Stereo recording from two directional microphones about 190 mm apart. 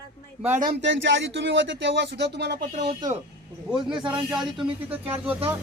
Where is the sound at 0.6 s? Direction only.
60° right (ahead or behind).